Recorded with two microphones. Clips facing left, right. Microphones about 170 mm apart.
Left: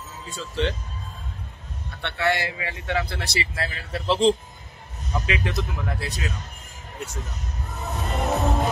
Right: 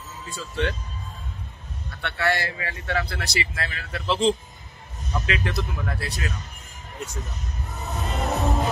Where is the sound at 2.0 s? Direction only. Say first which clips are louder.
Left 1 dB; 20° left (ahead or behind).